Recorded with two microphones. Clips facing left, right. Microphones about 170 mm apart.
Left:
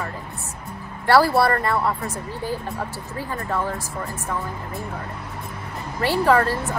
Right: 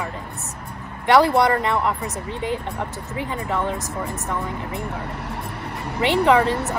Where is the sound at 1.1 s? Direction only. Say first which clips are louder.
Right 1 dB; 20° right (ahead or behind).